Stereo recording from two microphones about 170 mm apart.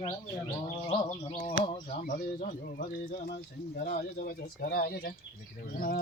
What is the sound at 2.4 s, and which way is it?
Speech, 65° left (ahead or behind).